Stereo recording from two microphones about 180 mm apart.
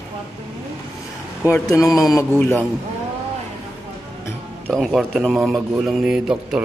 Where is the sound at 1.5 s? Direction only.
20° left (ahead or behind).